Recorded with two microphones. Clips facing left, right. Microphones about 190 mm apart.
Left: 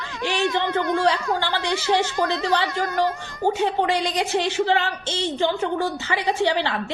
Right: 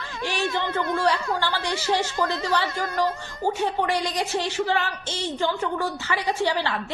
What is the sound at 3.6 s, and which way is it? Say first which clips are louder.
A woman's voice: left 2 dB; 20° left (ahead or behind).